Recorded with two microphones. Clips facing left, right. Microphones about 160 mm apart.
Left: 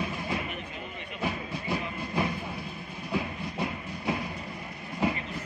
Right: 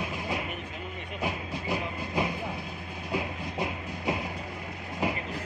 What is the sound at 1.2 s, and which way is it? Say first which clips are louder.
Train: left 1 dB; 15° right (ahead or behind).